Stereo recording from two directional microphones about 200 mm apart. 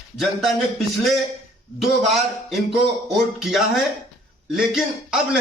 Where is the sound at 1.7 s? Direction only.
Centre (ahead or behind).